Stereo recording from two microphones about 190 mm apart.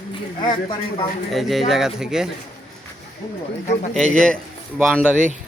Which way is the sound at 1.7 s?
Centre (ahead or behind).